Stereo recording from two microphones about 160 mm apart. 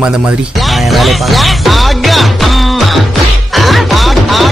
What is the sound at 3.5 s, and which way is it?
Music, centre (ahead or behind).